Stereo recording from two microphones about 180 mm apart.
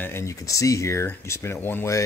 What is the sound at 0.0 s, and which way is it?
Speech, 15° left (ahead or behind).